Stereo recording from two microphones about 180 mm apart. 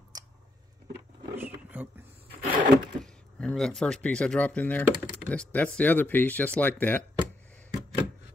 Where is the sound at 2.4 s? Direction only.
30° right (ahead or behind).